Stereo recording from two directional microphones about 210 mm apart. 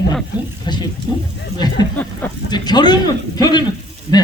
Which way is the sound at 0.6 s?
20° left (ahead or behind).